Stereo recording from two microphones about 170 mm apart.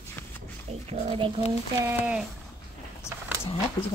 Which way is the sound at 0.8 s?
30° right (ahead or behind).